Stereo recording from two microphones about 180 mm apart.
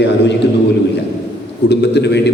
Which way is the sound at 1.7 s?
70° left (ahead or behind).